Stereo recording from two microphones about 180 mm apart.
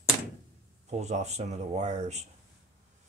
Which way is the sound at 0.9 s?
40° right (ahead or behind).